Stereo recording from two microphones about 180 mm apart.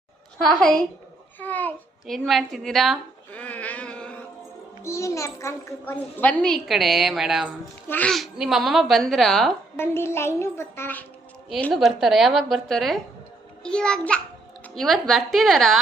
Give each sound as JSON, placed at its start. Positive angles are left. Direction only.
{"t": 1.4, "sound": "babbling", "side_deg": 10}
{"t": 4.8, "sound": "a child's voice", "side_deg": 15}
{"t": 7.9, "sound": "a child's voice", "side_deg": 10}
{"t": 9.7, "sound": "a child's voice", "side_deg": 10}
{"t": 11.4, "sound": "a child's voice", "side_deg": 0}